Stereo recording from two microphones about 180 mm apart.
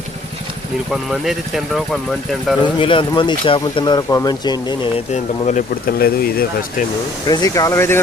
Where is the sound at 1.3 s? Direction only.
Centre (ahead or behind).